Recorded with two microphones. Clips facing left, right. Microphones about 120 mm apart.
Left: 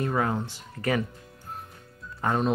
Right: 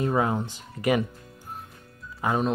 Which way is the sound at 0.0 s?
20° right (ahead or behind).